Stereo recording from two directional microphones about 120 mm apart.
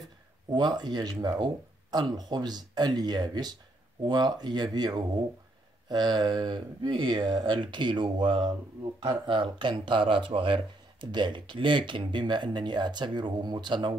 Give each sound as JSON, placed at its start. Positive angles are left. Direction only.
{"t": 0.5, "sound": "speech", "side_deg": -35}